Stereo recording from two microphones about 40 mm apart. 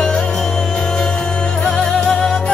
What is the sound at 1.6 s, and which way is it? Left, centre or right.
Music, centre.